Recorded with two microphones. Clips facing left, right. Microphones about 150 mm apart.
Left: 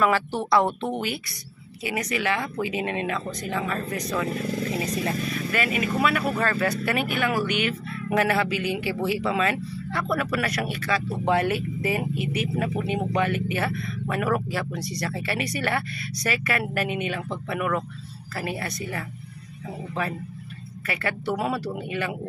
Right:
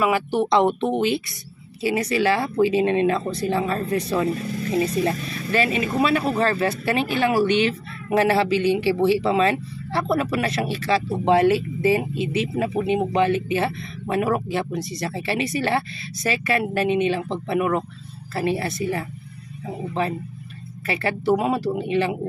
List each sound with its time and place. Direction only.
0.0 s speech: 15° right (ahead or behind)